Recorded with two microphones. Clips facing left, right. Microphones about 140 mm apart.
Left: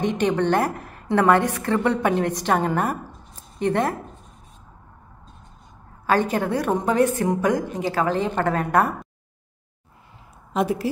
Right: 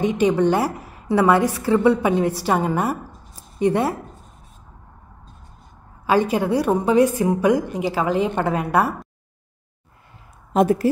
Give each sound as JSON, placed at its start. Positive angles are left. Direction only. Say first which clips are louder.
{"t": 0.0, "sound": "a woman's voice", "louder": "right 4 dB", "side_deg": -10}
{"t": 6.0, "sound": "a woman's voice", "louder": "right 2 dB", "side_deg": -10}
{"t": 10.5, "sound": "speech", "louder": "right 6 dB", "side_deg": -45}